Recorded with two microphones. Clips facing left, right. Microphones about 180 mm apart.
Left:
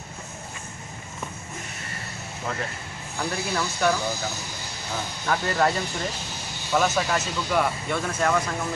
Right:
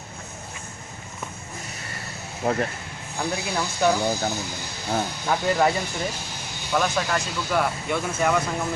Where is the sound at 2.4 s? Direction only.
55° right (ahead or behind).